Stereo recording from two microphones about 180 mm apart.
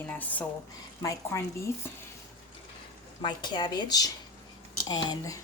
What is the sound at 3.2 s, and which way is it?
A woman's voice, 25° left (ahead or behind).